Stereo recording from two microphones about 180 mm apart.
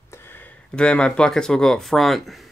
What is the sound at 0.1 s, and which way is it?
Speech, 10° left (ahead or behind).